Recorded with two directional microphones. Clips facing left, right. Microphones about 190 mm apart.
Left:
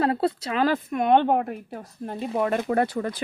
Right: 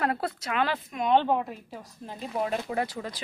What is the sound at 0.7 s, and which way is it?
Speech, 55° left (ahead or behind).